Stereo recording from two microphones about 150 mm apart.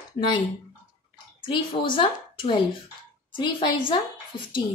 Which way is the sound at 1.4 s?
35° left (ahead or behind).